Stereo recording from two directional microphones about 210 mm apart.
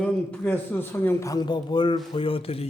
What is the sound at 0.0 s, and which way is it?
Speech, 10° left (ahead or behind).